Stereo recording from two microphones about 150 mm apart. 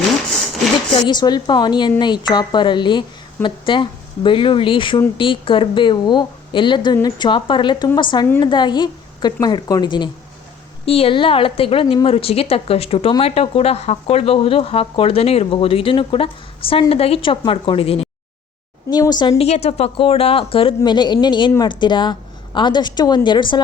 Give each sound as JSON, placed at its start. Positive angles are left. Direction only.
{"t": 0.9, "sound": "a woman's voice", "side_deg": 30}
{"t": 18.9, "sound": "a woman's voice", "side_deg": 25}
{"t": 19.4, "sound": "speech", "side_deg": 45}